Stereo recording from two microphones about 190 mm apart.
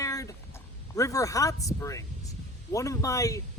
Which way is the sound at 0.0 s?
15° left (ahead or behind).